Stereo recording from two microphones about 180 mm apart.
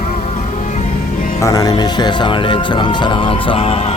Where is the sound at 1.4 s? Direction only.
20° left (ahead or behind).